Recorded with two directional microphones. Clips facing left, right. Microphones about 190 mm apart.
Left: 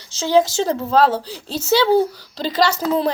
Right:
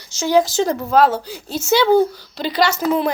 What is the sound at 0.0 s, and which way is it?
Speech, 25° left (ahead or behind).